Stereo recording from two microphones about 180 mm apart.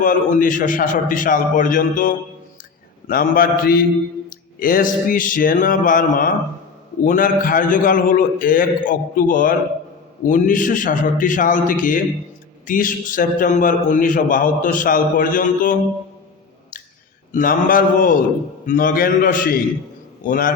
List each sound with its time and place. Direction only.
0.0 s a man's voice: 50° left (ahead or behind)
3.1 s mantra: 55° left (ahead or behind)
4.6 s a man's voice: 50° left (ahead or behind)
17.3 s a man's voice: 50° left (ahead or behind)